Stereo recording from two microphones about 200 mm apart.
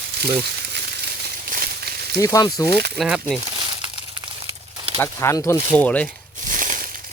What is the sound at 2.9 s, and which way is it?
Speech, centre (ahead or behind).